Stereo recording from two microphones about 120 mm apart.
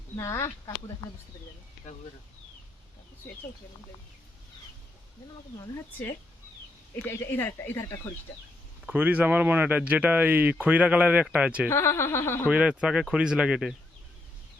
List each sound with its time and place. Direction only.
0.2 s speech: 25° left (ahead or behind)
5.7 s speech: 20° left (ahead or behind)
8.9 s speech: 15° right (ahead or behind)
11.7 s speech: 20° left (ahead or behind)
12.5 s speech: 10° right (ahead or behind)